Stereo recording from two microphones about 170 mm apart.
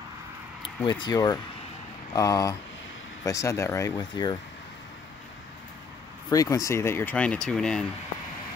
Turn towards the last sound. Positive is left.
turn(degrees=5)  # may be behind; listen again after turning